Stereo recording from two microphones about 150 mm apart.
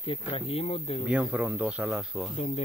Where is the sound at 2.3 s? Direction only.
45° left (ahead or behind).